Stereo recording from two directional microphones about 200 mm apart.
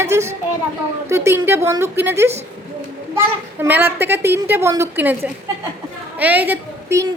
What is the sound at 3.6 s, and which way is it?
A woman's voice, 10° right (ahead or behind).